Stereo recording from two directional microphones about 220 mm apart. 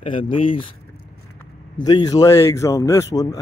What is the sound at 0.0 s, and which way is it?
Speech, 25° left (ahead or behind).